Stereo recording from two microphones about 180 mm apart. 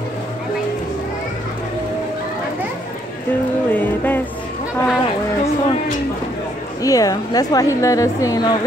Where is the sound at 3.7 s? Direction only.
10° left (ahead or behind).